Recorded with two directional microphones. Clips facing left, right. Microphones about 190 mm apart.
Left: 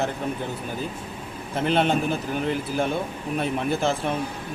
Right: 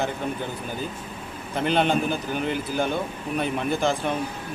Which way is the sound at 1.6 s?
Centre (ahead or behind).